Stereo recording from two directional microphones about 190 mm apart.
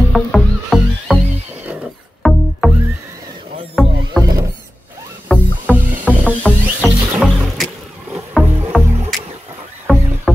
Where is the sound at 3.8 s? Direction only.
Centre (ahead or behind).